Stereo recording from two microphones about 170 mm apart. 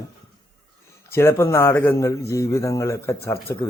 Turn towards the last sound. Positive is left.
turn(degrees=15)  # may be behind; listen again after turning